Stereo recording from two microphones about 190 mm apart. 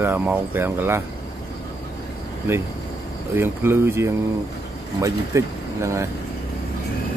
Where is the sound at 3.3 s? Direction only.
10° right (ahead or behind).